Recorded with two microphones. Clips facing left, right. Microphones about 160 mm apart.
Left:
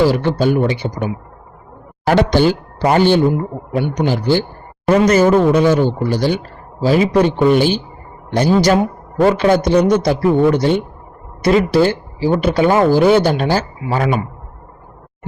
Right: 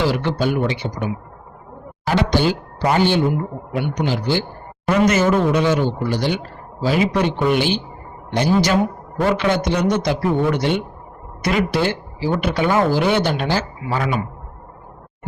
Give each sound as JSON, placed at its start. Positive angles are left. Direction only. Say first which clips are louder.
{"t": 0.1, "sound": "speech", "louder": "left 5 dB", "side_deg": 40}
{"t": 2.0, "sound": "a man's voice", "louder": "left 5 dB", "side_deg": 50}